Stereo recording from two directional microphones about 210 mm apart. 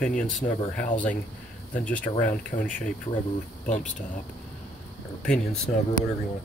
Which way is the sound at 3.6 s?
35° left (ahead or behind).